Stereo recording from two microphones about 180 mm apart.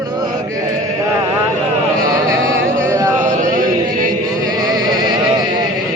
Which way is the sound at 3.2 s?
45° right (ahead or behind).